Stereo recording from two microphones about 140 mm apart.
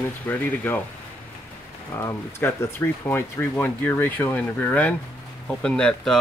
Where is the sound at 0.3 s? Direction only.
15° left (ahead or behind).